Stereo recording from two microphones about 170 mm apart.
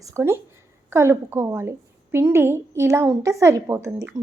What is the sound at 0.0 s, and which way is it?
A woman's voice, 15° right (ahead or behind).